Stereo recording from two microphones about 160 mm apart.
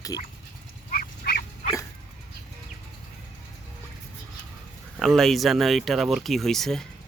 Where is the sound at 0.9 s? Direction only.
70° left (ahead or behind).